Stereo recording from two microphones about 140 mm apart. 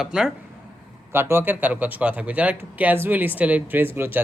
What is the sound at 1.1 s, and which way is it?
Speech, 15° right (ahead or behind).